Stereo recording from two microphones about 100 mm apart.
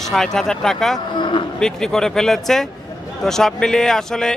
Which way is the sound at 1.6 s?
5° left (ahead or behind).